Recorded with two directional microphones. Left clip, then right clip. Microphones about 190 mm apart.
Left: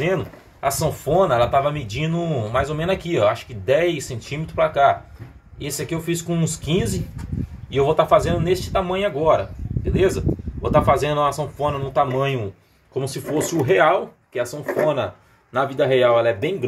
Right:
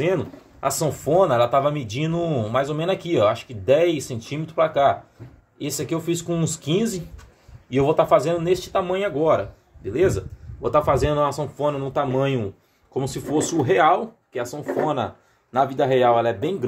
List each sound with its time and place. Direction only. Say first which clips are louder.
0.0 s speech: even; 15° right (ahead or behind)
10.6 s speech: left 2 dB; 15° right (ahead or behind)